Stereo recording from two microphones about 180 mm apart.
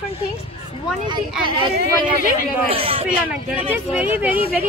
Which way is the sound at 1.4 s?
25° right (ahead or behind).